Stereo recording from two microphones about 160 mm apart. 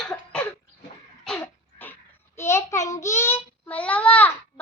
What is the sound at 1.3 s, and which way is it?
Throat clearing, 10° left (ahead or behind).